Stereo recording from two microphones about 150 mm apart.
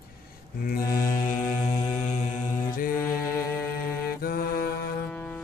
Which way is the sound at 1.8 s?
50° left (ahead or behind).